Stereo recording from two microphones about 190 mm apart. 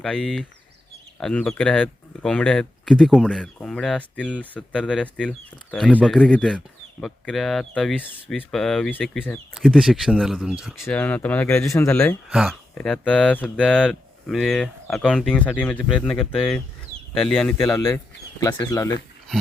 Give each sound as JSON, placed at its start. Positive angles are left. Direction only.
{"t": 0.0, "sound": "speech", "side_deg": 5}
{"t": 10.8, "sound": "speech", "side_deg": 10}
{"t": 12.3, "sound": "speech", "side_deg": 0}
{"t": 17.6, "sound": "speech", "side_deg": 15}